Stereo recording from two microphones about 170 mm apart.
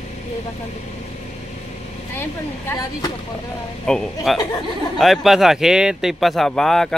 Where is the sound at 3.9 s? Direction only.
5° left (ahead or behind).